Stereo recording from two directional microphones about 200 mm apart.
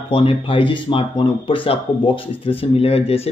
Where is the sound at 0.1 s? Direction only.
25° left (ahead or behind).